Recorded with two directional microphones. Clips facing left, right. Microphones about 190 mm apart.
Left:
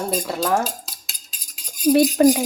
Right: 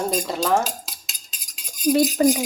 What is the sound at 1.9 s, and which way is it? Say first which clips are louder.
Speech: left 3 dB; 65° left (ahead or behind).